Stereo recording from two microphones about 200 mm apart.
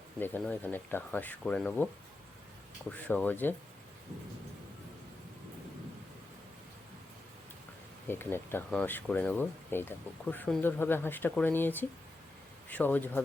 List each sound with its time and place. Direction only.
0.2 s speech: 10° left (ahead or behind)
2.9 s speech: 10° left (ahead or behind)
8.0 s speech: 10° left (ahead or behind)